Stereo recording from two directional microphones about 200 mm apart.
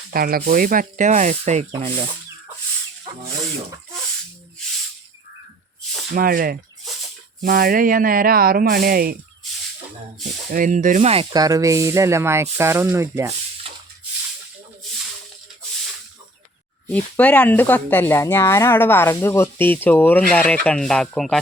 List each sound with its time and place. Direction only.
0.1 s speech: 45° right (ahead or behind); by 2.0 s 30° right (ahead or behind)
6.1 s speech: 45° right (ahead or behind)
10.5 s speech: 40° right (ahead or behind); by 13.3 s 15° right (ahead or behind)
16.9 s speech: 5° left (ahead or behind)